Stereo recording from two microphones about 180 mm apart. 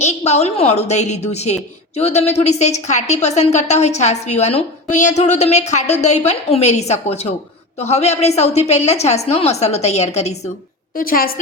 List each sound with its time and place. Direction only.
0.0 s a woman's voice: 35° left (ahead or behind)
10.9 s a woman's voice: 55° left (ahead or behind)